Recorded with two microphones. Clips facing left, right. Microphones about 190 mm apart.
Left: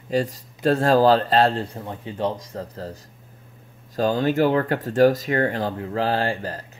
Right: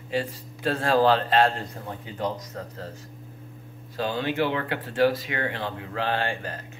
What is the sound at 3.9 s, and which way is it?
Speech, 40° left (ahead or behind).